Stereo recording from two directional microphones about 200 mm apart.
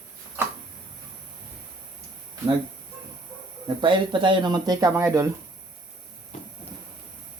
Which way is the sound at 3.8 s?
25° right (ahead or behind).